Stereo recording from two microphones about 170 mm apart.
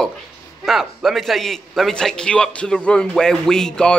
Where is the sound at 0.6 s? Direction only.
Centre (ahead or behind).